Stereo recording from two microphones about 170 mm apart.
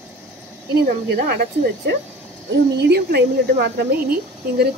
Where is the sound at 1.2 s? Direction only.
70° right (ahead or behind).